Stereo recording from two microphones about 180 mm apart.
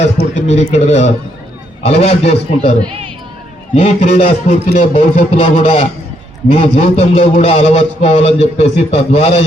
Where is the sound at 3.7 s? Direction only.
35° left (ahead or behind).